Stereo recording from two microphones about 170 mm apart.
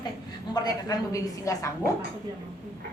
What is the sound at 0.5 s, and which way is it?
A woman's voice, 20° left (ahead or behind).